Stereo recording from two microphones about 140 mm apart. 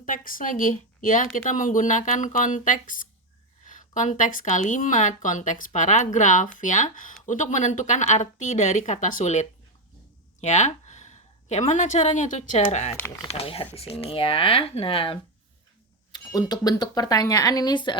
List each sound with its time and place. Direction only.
0.0 s a woman's voice: 80° left; by 15.2 s 40° left (ahead or behind)
16.5 s speech: 30° left (ahead or behind)